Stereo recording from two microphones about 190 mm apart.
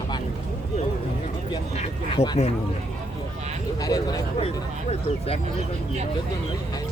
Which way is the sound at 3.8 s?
20° left (ahead or behind).